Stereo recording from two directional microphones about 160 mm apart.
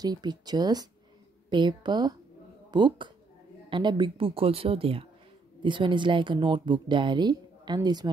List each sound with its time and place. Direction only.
0.0 s speech: 25° right (ahead or behind)